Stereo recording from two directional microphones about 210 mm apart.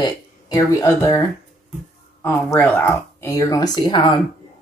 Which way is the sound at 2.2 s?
10° left (ahead or behind).